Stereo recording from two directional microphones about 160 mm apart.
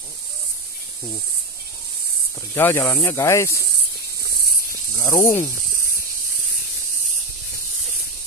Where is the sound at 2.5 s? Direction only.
15° left (ahead or behind).